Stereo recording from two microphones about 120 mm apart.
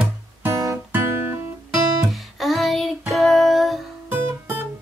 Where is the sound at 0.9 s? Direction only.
15° right (ahead or behind).